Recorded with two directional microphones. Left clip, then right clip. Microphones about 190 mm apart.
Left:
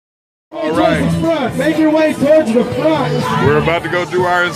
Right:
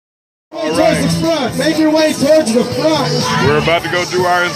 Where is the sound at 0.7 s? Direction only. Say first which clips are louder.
Right 1 dB; 5° right (ahead or behind).